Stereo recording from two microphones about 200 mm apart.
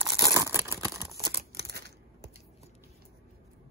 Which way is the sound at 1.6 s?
55° right (ahead or behind).